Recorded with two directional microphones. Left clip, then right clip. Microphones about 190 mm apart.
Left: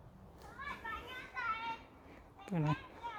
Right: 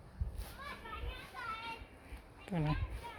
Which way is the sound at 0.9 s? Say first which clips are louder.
Left 5 dB; 25° left (ahead or behind).